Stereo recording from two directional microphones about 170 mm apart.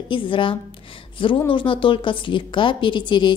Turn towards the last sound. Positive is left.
turn(degrees=25)  # may be behind; listen again after turning